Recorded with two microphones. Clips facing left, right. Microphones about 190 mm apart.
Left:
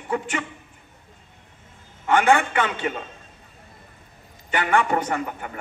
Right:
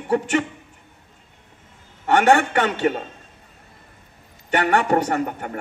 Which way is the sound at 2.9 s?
45° right (ahead or behind).